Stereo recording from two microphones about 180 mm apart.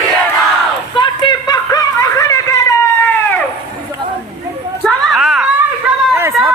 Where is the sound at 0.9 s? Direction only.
25° left (ahead or behind); by 3.4 s 10° left (ahead or behind).